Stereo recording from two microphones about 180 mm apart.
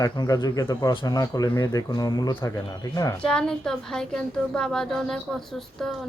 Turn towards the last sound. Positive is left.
turn(degrees=0)  # may be behind; listen again after turning